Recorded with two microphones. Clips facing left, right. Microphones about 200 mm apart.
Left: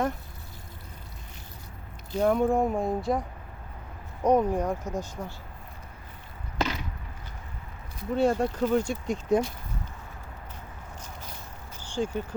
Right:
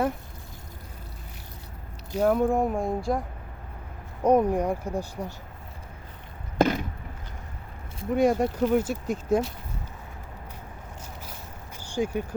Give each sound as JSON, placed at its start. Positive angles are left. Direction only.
{"t": 2.1, "sound": "speech", "side_deg": -5}
{"t": 4.2, "sound": "speech", "side_deg": -10}
{"t": 6.6, "sound": "chop", "side_deg": -50}
{"t": 8.1, "sound": "speech", "side_deg": -10}
{"t": 11.9, "sound": "speech", "side_deg": -10}